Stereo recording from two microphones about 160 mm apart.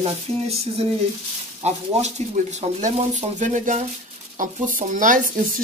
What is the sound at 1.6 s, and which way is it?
Speech, 45° right (ahead or behind).